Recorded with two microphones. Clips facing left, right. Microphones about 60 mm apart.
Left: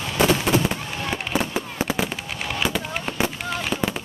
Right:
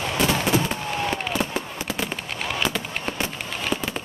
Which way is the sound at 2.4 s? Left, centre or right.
Centre.